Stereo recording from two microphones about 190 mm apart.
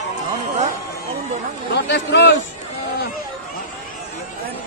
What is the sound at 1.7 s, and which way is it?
Speech, 65° left (ahead or behind).